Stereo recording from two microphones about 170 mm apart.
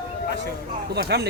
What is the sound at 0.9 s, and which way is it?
Speech, 70° right (ahead or behind).